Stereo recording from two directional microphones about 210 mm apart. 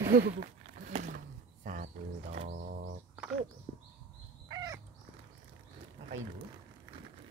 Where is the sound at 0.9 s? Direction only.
35° right (ahead or behind).